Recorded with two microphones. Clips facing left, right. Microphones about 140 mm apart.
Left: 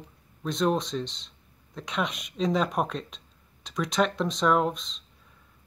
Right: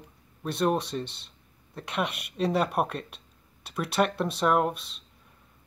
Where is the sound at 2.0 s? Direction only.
65° right (ahead or behind).